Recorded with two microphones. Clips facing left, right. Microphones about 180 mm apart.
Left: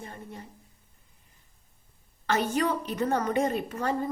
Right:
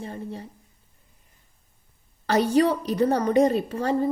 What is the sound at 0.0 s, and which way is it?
Speech, 30° right (ahead or behind).